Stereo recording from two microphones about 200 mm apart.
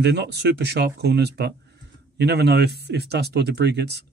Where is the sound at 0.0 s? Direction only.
55° right (ahead or behind).